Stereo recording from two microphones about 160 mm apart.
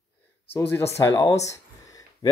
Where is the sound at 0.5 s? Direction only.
15° left (ahead or behind).